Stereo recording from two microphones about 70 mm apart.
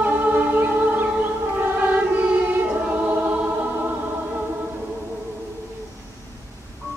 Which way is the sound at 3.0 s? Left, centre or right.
Right.